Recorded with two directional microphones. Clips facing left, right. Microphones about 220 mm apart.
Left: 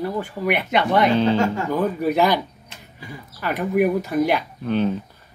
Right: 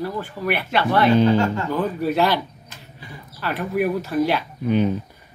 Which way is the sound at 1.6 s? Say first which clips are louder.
Left 1 dB; 15° left (ahead or behind).